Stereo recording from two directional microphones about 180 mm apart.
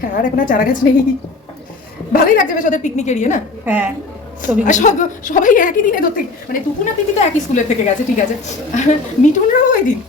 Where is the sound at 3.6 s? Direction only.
10° right (ahead or behind).